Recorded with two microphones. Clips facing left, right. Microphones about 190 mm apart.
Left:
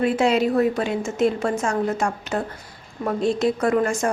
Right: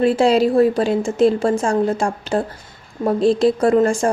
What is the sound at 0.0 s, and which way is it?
A woman's voice, 30° right (ahead or behind).